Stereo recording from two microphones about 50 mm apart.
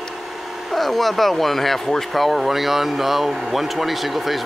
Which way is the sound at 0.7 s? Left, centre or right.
Centre.